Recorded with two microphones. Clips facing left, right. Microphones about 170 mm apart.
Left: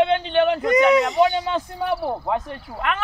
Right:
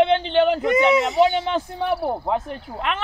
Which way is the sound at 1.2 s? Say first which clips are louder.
Right 1 dB; 25° right (ahead or behind).